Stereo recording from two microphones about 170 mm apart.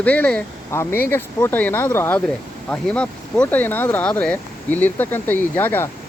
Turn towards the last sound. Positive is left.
turn(degrees=10)  # may be behind; listen again after turning